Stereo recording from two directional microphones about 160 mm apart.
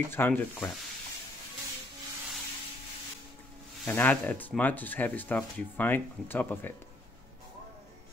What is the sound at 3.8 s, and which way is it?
Speech, 10° left (ahead or behind).